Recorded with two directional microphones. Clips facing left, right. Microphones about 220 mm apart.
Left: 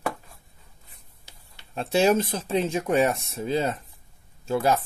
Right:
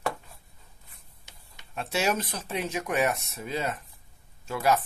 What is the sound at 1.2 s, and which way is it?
Speech, 30° left (ahead or behind).